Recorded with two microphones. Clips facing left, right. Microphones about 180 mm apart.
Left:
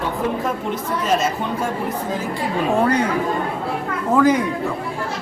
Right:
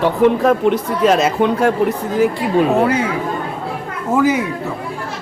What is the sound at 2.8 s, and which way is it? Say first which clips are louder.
Speech: right 2 dB; 5° right (ahead or behind).